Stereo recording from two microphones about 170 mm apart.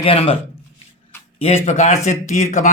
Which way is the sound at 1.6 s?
45° left (ahead or behind).